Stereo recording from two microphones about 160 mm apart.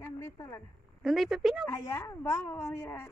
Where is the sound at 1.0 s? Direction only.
Centre (ahead or behind).